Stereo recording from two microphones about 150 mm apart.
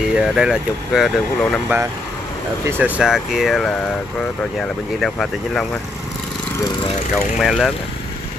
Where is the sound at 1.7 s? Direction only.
15° right (ahead or behind); by 5.7 s 5° left (ahead or behind).